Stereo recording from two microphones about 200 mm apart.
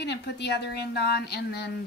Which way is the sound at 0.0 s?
55° left (ahead or behind).